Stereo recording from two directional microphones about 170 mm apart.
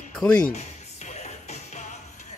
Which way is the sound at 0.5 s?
40° left (ahead or behind).